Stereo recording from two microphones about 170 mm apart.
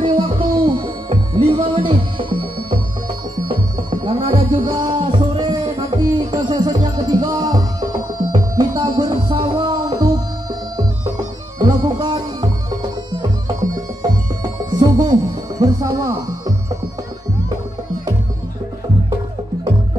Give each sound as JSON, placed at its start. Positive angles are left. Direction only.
{"t": 0.0, "sound": "music", "side_deg": -30}
{"t": 11.5, "sound": "music", "side_deg": -25}
{"t": 14.0, "sound": "music", "side_deg": -25}